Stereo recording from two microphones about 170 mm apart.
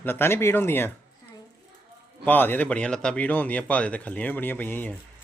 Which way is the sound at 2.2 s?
10° left (ahead or behind).